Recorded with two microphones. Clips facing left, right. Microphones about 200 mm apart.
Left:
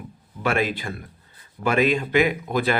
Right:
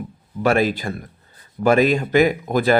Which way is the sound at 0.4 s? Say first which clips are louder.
Right 5 dB; 40° right (ahead or behind).